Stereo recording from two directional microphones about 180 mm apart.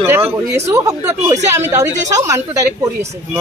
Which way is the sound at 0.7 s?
15° right (ahead or behind).